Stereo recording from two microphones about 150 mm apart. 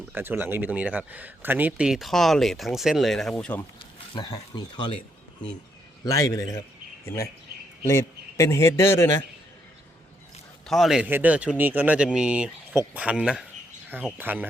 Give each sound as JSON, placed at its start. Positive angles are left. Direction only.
{"t": 0.1, "sound": "speech", "side_deg": -15}
{"t": 4.1, "sound": "speech", "side_deg": 25}
{"t": 6.1, "sound": "a man's voice", "side_deg": 20}
{"t": 10.7, "sound": "speech", "side_deg": 0}